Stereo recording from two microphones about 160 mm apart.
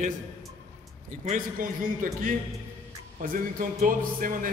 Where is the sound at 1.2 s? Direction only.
55° right (ahead or behind).